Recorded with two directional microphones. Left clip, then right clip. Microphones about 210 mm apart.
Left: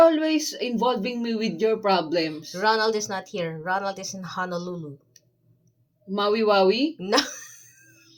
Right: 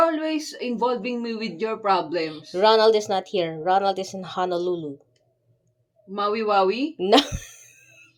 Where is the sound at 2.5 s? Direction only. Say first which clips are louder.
Right 6 dB; 45° right (ahead or behind).